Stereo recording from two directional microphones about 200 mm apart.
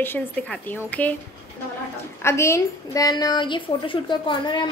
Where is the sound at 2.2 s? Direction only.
15° left (ahead or behind).